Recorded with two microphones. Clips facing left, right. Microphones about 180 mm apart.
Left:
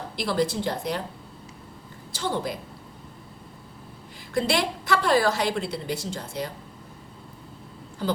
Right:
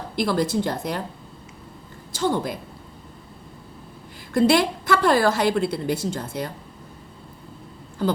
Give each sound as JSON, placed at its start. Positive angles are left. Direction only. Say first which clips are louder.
{"t": 0.2, "sound": "a woman's voice", "louder": "right 3 dB", "side_deg": -50}
{"t": 2.1, "sound": "a woman's voice", "louder": "right 5 dB", "side_deg": -50}
{"t": 4.4, "sound": "a woman's voice", "louder": "right 7 dB", "side_deg": -50}